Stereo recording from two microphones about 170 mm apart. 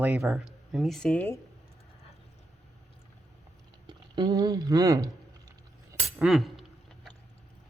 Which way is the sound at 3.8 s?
25° right (ahead or behind).